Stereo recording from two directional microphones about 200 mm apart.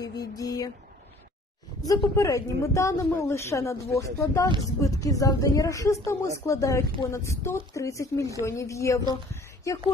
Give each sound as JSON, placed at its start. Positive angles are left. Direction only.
{"t": 0.4, "sound": "a woman's voice", "side_deg": 15}
{"t": 1.9, "sound": "a woman's voice", "side_deg": 15}